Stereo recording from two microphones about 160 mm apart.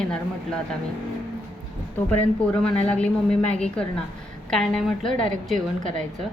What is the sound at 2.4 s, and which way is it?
A woman's voice, 5° left (ahead or behind).